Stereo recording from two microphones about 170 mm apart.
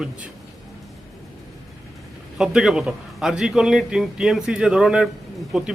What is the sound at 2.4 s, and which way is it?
Speech, 5° right (ahead or behind).